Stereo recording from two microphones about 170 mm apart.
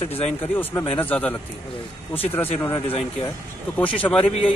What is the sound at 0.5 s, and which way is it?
Speech, 15° left (ahead or behind).